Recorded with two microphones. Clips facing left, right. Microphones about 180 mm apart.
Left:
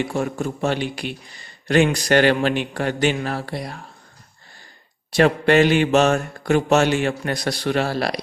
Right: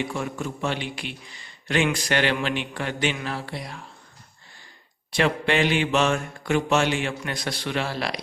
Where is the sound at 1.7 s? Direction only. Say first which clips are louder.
Left 6 dB; 40° left (ahead or behind).